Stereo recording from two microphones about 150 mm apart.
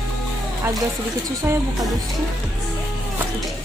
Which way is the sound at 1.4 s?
15° right (ahead or behind).